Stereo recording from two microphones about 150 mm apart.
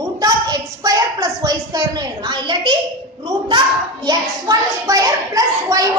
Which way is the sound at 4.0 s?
25° right (ahead or behind).